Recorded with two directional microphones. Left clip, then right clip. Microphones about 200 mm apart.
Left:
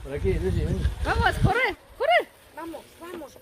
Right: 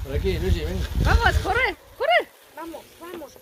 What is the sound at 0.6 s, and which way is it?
Speech, 50° right (ahead or behind).